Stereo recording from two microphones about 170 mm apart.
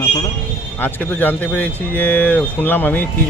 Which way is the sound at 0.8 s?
10° left (ahead or behind).